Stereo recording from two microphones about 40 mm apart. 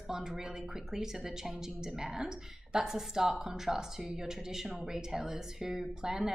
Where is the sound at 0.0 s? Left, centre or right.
Centre.